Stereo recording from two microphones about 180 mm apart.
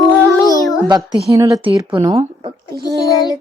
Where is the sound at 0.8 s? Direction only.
25° right (ahead or behind).